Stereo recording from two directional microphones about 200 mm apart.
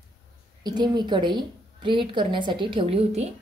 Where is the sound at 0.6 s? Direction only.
20° right (ahead or behind).